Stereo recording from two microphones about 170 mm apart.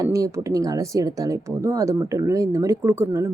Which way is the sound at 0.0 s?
20° right (ahead or behind).